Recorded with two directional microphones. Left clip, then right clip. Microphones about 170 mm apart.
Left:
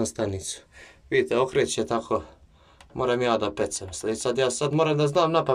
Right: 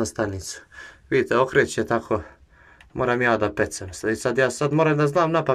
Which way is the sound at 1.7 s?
50° right (ahead or behind).